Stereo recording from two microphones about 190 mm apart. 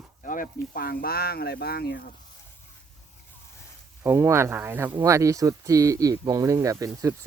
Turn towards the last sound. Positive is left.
turn(degrees=-15)  # may be behind; listen again after turning